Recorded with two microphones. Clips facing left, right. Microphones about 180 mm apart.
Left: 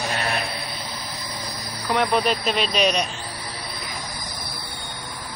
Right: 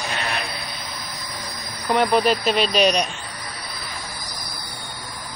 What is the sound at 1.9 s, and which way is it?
Speech, centre (ahead or behind).